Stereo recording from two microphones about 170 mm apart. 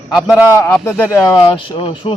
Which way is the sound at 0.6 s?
10° left (ahead or behind).